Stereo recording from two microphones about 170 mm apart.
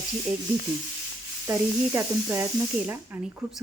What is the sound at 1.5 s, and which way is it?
Speech, 15° right (ahead or behind).